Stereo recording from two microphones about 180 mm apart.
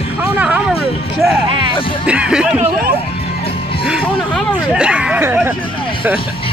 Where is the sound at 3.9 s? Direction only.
5° right (ahead or behind).